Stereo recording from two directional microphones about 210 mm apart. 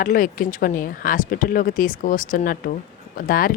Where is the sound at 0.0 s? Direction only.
40° left (ahead or behind).